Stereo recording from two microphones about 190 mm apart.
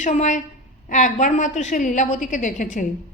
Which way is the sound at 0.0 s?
40° left (ahead or behind).